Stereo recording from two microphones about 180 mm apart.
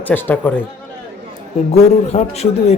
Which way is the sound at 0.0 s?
10° left (ahead or behind).